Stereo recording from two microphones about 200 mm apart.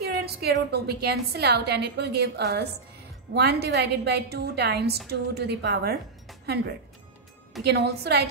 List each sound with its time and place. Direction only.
0.0 s a woman's voice: 50° right (ahead or behind)